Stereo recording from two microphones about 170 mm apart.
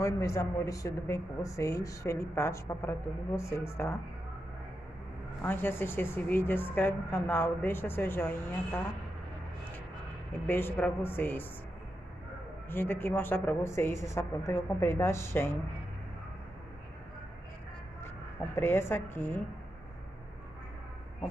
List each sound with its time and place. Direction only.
0.0 s speech: 15° left (ahead or behind)
5.4 s speech: 15° left (ahead or behind)
10.4 s speech: 10° left (ahead or behind)
12.6 s speech: 10° left (ahead or behind)
18.6 s speech: 15° left (ahead or behind)